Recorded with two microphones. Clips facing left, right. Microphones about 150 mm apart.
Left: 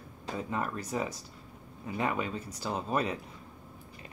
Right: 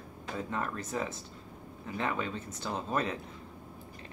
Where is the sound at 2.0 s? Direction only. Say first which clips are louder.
Left 2 dB; 10° left (ahead or behind).